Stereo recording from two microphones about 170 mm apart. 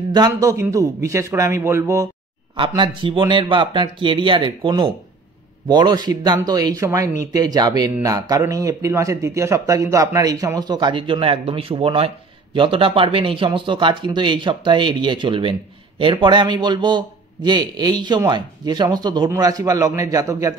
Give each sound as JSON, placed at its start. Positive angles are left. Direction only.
{"t": 0.1, "sound": "a man's voice", "side_deg": -20}
{"t": 2.5, "sound": "a man's voice", "side_deg": -30}